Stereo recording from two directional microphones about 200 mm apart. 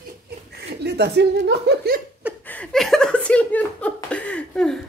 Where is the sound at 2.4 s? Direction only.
5° left (ahead or behind).